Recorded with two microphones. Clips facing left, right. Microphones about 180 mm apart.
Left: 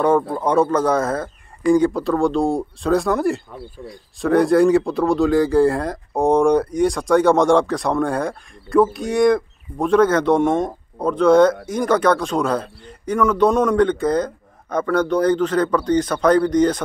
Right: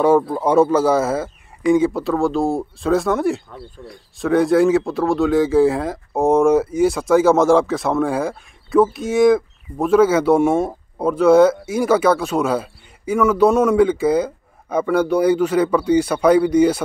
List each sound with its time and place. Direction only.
0.0 s speech: 5° right (ahead or behind)